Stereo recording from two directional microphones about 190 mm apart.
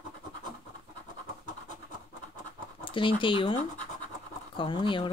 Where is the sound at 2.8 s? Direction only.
25° left (ahead or behind).